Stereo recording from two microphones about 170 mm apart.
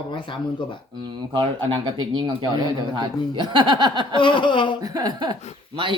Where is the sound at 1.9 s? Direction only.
25° right (ahead or behind).